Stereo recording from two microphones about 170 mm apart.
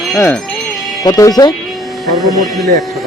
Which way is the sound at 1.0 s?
25° left (ahead or behind).